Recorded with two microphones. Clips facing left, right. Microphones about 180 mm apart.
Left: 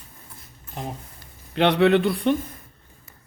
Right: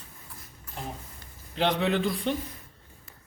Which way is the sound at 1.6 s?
65° left (ahead or behind).